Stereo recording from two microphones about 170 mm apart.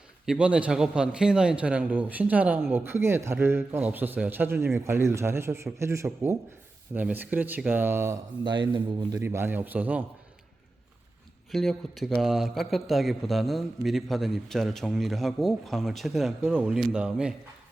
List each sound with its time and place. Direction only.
0.3 s a man's voice: 5° right (ahead or behind)
8.4 s a man's voice: 30° right (ahead or behind)
9.2 s a man's voice: 15° right (ahead or behind)
11.5 s a man's voice: centre (ahead or behind)